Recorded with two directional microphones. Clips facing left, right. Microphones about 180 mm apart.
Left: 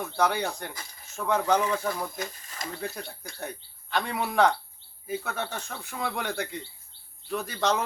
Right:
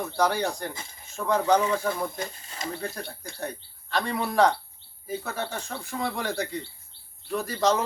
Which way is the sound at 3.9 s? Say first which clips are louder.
Right 2 dB; 5° left (ahead or behind).